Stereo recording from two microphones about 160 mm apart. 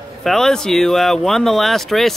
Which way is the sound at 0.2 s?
Centre (ahead or behind).